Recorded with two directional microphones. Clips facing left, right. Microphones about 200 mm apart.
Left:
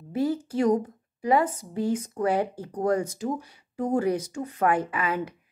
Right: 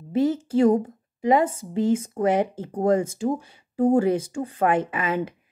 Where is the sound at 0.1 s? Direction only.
25° right (ahead or behind).